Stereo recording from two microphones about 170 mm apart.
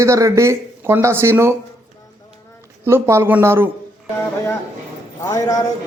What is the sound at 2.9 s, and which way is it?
Speech, 15° right (ahead or behind).